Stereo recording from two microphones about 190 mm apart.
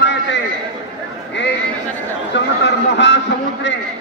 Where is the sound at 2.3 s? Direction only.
70° left (ahead or behind).